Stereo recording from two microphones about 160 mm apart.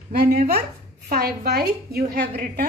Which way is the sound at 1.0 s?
70° right (ahead or behind).